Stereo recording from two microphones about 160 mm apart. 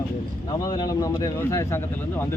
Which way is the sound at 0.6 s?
25° left (ahead or behind).